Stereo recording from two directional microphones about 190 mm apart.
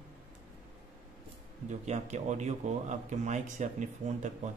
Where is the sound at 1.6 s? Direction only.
40° right (ahead or behind).